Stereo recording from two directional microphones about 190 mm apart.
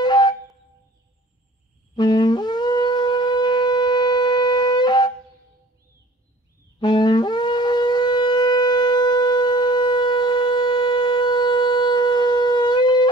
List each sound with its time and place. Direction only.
0.0 s wind instrument: 25° left (ahead or behind)
2.0 s shofar: 20° left (ahead or behind)
6.8 s shofar: 25° left (ahead or behind)